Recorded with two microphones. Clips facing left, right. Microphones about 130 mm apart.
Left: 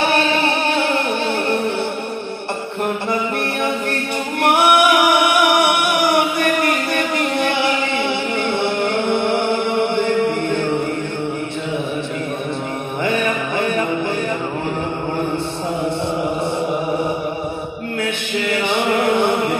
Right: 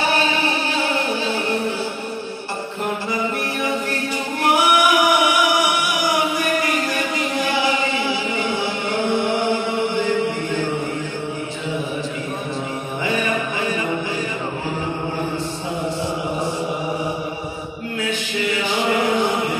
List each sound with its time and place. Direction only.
0.0 s music: 65° left (ahead or behind)
3.6 s a capella: 60° left (ahead or behind)
13.6 s music: 60° left (ahead or behind)
18.5 s chant: 60° left (ahead or behind)